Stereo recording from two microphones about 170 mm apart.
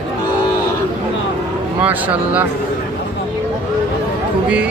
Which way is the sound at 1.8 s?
10° right (ahead or behind).